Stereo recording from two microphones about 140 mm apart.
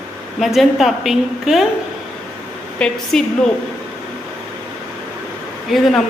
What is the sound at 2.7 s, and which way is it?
Speech, 5° left (ahead or behind).